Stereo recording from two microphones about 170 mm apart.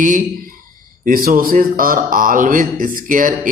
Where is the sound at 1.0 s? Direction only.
55° right (ahead or behind).